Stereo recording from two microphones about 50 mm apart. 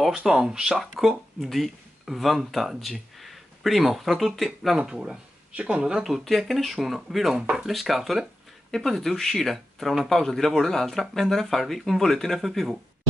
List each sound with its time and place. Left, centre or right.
0.2 s speech: centre
0.9 s speech: centre
4.7 s speech: centre
6.0 s speech: centre
7.3 s speech: centre
7.6 s speech: centre